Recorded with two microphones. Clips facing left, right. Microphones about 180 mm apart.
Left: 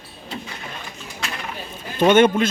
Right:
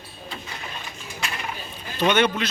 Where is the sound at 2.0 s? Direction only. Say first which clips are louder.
Left 6 dB; 45° left (ahead or behind).